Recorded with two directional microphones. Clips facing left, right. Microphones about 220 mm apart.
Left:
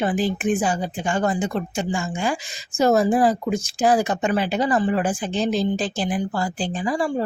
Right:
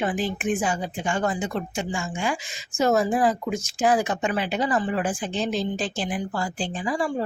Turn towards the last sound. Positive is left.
turn(degrees=35)  # may be behind; listen again after turning